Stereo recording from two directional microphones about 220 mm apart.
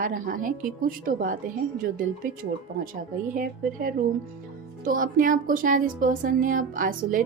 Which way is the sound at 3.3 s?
40° right (ahead or behind).